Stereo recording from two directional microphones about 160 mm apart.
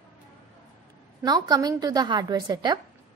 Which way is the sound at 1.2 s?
25° right (ahead or behind).